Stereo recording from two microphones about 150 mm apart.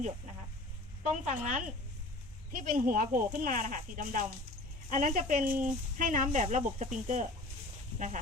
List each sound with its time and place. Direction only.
1.1 s speech: 55° right (ahead or behind)
2.6 s speech: 70° right (ahead or behind)